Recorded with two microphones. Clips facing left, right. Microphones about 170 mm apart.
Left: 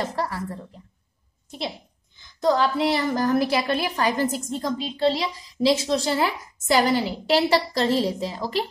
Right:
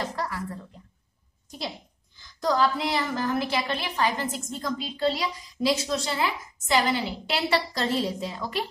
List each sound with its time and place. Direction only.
0.0 s a woman's voice: 30° left (ahead or behind)
2.1 s a woman's voice: 25° left (ahead or behind)